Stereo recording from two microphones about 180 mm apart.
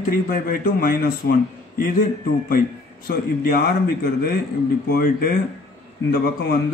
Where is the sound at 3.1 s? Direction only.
55° left (ahead or behind).